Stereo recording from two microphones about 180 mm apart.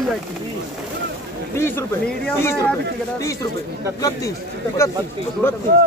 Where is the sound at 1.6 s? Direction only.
15° left (ahead or behind).